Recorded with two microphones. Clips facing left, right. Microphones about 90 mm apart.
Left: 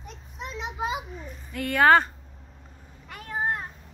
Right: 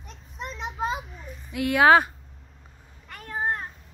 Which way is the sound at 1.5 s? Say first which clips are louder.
Right 1 dB; 10° right (ahead or behind).